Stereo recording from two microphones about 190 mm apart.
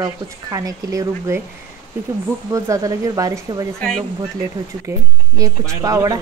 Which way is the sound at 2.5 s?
15° right (ahead or behind).